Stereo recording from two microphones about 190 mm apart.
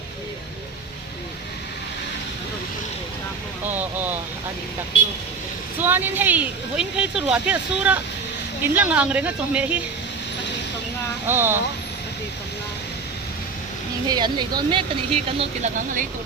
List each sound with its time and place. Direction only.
3.8 s speech: 10° right (ahead or behind)
5.8 s speech: 10° right (ahead or behind)
11.3 s speech: 10° right (ahead or behind)
14.1 s speech: 20° right (ahead or behind)